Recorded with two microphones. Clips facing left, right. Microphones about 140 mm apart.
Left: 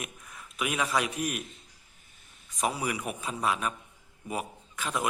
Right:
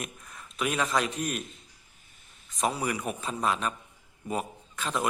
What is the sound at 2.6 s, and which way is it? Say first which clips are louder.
A man's voice: right 1 dB; 5° left (ahead or behind).